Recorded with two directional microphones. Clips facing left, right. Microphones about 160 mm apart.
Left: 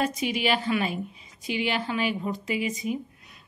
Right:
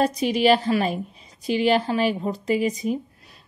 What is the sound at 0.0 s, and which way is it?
A woman's voice, 35° right (ahead or behind).